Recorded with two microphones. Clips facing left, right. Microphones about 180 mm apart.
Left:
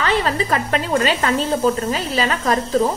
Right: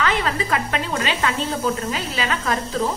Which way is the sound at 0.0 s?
35° left (ahead or behind).